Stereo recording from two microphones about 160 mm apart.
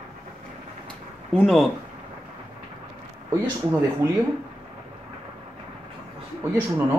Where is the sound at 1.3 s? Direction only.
5° left (ahead or behind).